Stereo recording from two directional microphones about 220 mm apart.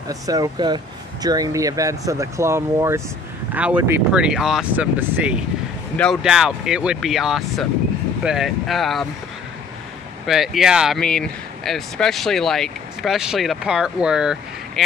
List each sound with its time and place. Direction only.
0.1 s speech: 15° right (ahead or behind); by 9.0 s centre (ahead or behind)
10.2 s speech: centre (ahead or behind)